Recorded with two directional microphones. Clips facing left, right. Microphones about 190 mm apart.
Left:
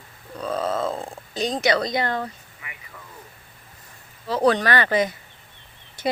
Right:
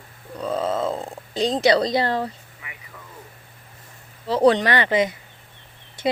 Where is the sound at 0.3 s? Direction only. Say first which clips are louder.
Right 1 dB; 20° right (ahead or behind).